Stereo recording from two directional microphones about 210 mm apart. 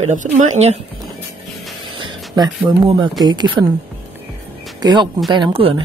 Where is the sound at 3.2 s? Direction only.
20° right (ahead or behind).